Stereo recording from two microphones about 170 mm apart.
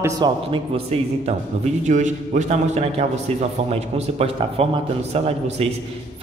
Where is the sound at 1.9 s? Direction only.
45° right (ahead or behind).